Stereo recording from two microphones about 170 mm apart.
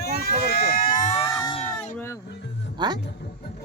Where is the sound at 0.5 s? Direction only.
45° left (ahead or behind).